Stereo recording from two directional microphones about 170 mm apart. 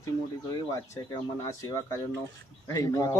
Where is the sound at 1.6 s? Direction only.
15° left (ahead or behind).